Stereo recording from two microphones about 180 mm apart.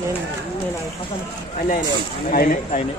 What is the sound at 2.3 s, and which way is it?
Speech, 50° left (ahead or behind).